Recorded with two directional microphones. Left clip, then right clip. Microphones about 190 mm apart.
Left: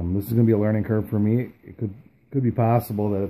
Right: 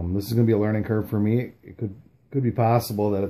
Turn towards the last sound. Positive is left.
turn(degrees=30)  # may be behind; listen again after turning